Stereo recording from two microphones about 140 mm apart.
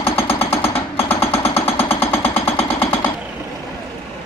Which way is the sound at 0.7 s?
15° left (ahead or behind).